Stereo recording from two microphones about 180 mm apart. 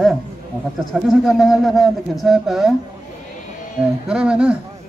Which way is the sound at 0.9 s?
Centre (ahead or behind).